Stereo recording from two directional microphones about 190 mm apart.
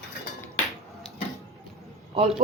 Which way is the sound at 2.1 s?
35° right (ahead or behind).